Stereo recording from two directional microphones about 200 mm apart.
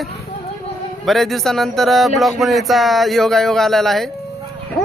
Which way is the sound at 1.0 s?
Centre (ahead or behind).